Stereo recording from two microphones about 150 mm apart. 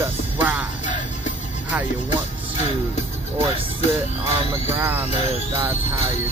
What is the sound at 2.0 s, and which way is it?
Music, 50° left (ahead or behind).